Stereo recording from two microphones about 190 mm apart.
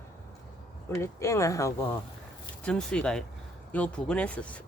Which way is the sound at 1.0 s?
15° left (ahead or behind).